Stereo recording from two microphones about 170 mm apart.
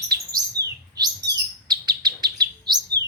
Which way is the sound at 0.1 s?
20° right (ahead or behind).